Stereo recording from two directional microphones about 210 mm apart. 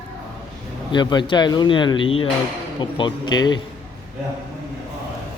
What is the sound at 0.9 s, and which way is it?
Speech, 20° left (ahead or behind).